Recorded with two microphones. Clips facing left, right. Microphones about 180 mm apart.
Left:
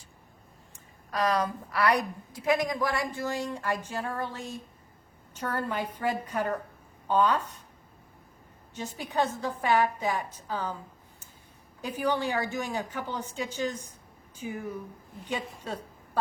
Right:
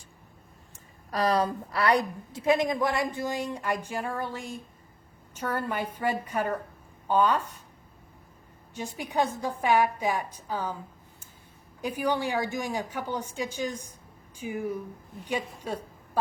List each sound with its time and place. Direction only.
1.1 s a woman's voice: 35° right (ahead or behind); by 7.6 s 10° right (ahead or behind)
8.7 s a woman's voice: 10° right (ahead or behind)
11.8 s a woman's voice: 10° right (ahead or behind)